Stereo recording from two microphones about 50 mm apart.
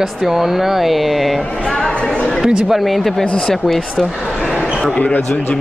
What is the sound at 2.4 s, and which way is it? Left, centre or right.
Speech, centre.